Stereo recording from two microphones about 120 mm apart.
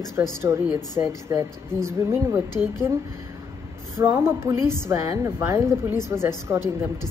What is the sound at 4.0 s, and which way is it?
A woman's voice, 20° right (ahead or behind).